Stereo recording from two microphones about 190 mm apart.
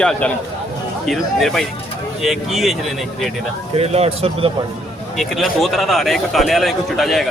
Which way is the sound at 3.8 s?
30° right (ahead or behind).